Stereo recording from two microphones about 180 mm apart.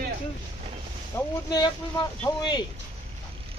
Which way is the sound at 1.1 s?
15° left (ahead or behind).